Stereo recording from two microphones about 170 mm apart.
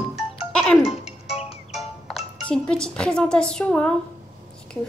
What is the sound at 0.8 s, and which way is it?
Music, 35° left (ahead or behind).